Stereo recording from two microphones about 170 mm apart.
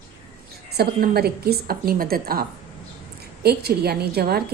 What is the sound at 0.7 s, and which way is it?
A woman's voice, 65° right (ahead or behind).